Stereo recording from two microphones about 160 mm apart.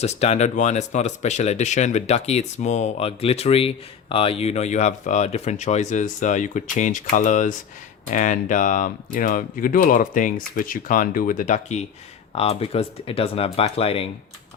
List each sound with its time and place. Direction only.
0.0 s speech: 40° left (ahead or behind)